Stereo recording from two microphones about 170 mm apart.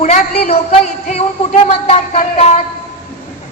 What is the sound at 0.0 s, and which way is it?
A woman's voice, 40° left (ahead or behind).